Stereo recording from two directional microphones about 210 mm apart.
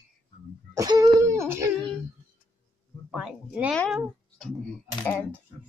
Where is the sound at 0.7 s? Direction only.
15° right (ahead or behind).